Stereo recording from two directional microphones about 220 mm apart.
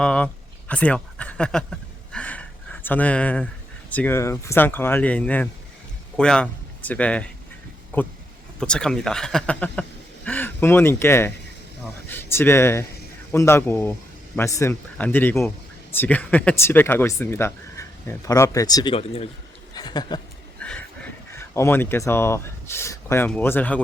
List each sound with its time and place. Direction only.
0.0 s a man's voice: 5° left (ahead or behind); by 20.2 s 20° left (ahead or behind)
20.6 s a sound: 5° left (ahead or behind)
21.5 s speech: 10° left (ahead or behind)